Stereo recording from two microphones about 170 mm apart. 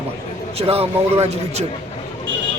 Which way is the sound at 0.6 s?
35° right (ahead or behind).